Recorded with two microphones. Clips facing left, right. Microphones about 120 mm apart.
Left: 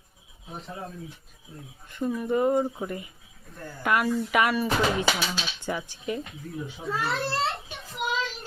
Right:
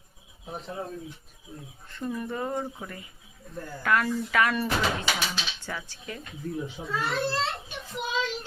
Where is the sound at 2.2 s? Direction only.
20° left (ahead or behind).